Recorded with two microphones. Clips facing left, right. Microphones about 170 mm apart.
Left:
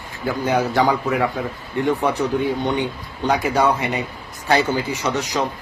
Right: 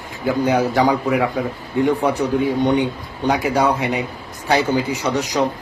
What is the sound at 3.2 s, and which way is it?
A man's voice, 10° right (ahead or behind).